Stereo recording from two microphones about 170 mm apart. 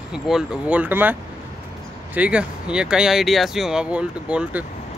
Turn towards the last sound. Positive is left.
turn(degrees=-5)  # may be behind; listen again after turning